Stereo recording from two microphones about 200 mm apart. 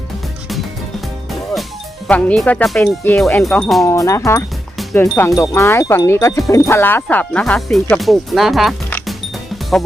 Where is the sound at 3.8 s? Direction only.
15° left (ahead or behind).